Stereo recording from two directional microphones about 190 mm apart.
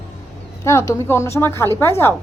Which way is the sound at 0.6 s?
15° left (ahead or behind).